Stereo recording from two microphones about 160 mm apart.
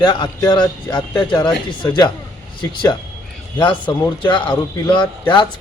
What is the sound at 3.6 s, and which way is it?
A man's voice, 30° left (ahead or behind).